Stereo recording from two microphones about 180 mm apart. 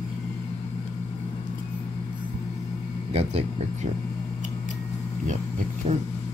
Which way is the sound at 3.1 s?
35° right (ahead or behind).